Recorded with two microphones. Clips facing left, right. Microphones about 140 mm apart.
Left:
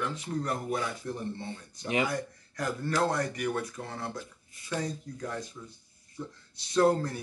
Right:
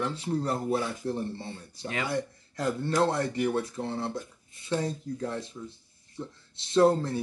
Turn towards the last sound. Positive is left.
turn(degrees=-25)  # may be behind; listen again after turning